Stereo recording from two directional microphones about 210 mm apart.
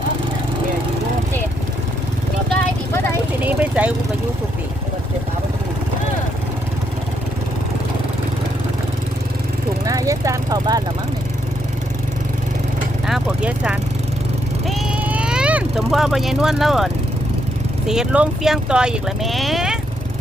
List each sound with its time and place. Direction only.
3.4 s vehicle: 5° right (ahead or behind)
9.8 s vehicle: 15° right (ahead or behind)
13.1 s speech: 5° right (ahead or behind)